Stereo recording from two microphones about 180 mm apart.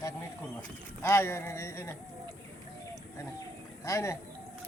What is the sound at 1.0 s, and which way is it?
Speech, 15° left (ahead or behind).